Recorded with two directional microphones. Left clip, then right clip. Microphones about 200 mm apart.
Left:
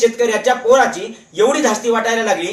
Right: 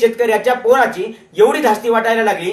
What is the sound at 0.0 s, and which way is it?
Speech, 15° right (ahead or behind).